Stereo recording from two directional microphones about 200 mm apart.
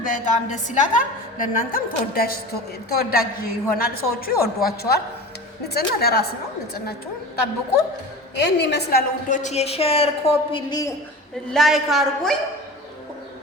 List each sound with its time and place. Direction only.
0.0 s a woman's voice: 40° left (ahead or behind)
8.4 s a woman's voice: 60° left (ahead or behind)
9.4 s a woman's voice: 35° left (ahead or behind)
11.5 s a woman's voice: centre (ahead or behind)